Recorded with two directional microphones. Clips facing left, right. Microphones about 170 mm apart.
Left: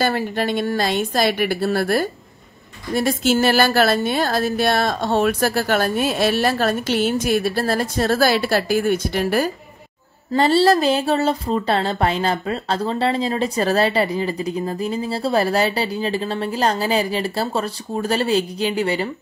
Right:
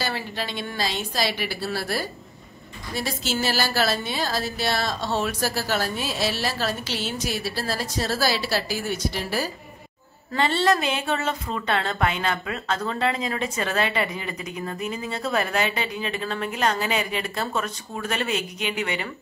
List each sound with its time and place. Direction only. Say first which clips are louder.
0.0 s a woman's voice: left 9 dB; 55° left (ahead or behind)
10.3 s a woman's voice: left 7 dB; 35° left (ahead or behind)